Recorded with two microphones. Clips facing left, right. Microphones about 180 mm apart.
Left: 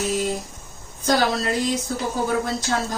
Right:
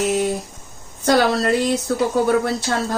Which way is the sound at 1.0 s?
65° right (ahead or behind).